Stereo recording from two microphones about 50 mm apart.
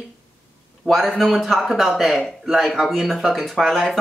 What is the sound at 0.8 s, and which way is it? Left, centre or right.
Speech, right.